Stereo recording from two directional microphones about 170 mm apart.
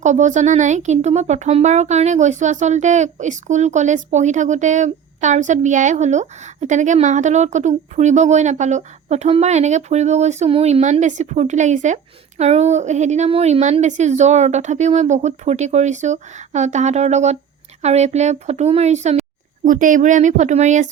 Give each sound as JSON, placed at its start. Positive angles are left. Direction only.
{"t": 0.0, "sound": "speech", "side_deg": -45}